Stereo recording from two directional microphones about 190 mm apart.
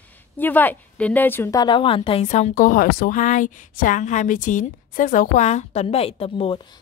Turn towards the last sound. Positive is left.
turn(degrees=25)  # may be behind; listen again after turning